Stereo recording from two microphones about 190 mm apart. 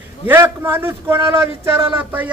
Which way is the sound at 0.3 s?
10° right (ahead or behind).